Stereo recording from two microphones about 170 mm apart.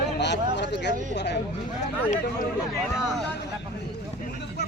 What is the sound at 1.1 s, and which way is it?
Speech, 90° left.